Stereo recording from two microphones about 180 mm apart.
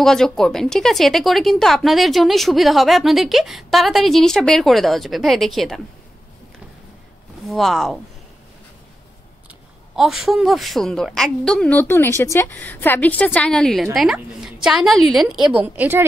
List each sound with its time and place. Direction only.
0.0 s speech: 5° left (ahead or behind)
7.4 s speech: centre (ahead or behind)
9.9 s a woman's voice: centre (ahead or behind)